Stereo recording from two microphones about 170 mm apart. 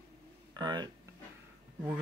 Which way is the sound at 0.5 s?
25° right (ahead or behind).